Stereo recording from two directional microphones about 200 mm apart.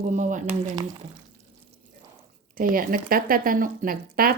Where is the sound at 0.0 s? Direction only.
40° right (ahead or behind).